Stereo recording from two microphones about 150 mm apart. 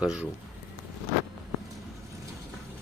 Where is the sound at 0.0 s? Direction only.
5° right (ahead or behind).